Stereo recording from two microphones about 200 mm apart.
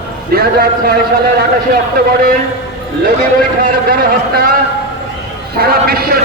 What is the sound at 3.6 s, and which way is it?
Speech, 45° right (ahead or behind).